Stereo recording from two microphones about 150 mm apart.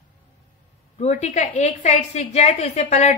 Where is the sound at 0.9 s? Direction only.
50° left (ahead or behind).